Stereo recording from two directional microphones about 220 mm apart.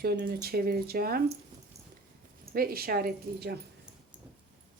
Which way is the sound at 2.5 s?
45° right (ahead or behind).